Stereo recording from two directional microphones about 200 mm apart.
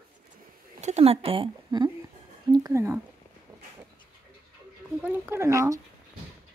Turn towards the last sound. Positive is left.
turn(degrees=-15)  # may be behind; listen again after turning